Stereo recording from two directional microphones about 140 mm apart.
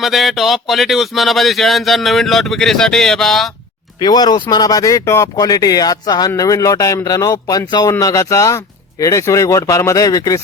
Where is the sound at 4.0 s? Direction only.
30° left (ahead or behind).